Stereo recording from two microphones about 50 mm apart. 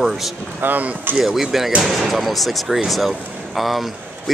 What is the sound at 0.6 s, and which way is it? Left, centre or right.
Speech, right.